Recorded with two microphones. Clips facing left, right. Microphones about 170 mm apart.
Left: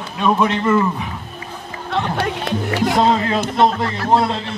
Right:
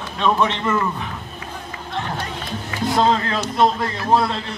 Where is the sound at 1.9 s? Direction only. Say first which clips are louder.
Left 7 dB; 70° left (ahead or behind).